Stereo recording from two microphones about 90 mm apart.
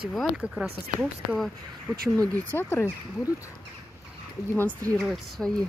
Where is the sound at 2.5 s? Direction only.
25° left (ahead or behind).